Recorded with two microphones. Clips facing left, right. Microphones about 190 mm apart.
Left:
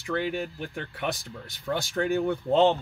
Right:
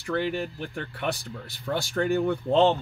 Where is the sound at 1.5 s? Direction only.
15° left (ahead or behind).